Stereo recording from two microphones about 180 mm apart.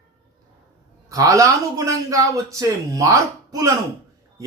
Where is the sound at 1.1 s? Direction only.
15° right (ahead or behind).